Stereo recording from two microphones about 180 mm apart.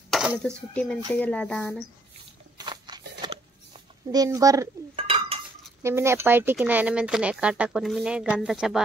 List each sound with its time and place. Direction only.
0.1 s a sound: 5° right (ahead or behind)
0.4 s a woman's voice: 5° left (ahead or behind)
2.5 s walk: 25° right (ahead or behind)
4.1 s speech: 20° right (ahead or behind)
4.9 s dishes: 30° right (ahead or behind)
5.8 s a woman's voice: 15° right (ahead or behind)